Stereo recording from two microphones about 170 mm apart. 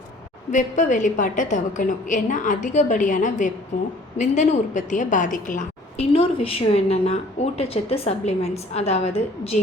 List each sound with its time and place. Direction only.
0.5 s a woman's voice: 45° left (ahead or behind)
6.1 s a woman's voice: 35° left (ahead or behind)